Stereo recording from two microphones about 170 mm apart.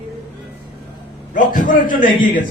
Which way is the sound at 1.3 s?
50° left (ahead or behind).